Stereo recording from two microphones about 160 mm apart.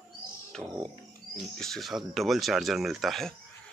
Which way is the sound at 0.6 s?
15° right (ahead or behind).